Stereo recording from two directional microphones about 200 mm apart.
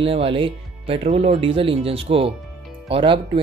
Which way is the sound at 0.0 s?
30° right (ahead or behind).